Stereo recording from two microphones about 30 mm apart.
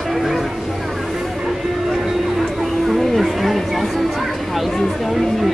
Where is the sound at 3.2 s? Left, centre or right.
Centre.